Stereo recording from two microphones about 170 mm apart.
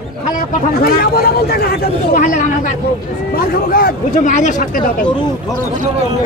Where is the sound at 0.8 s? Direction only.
65° left (ahead or behind).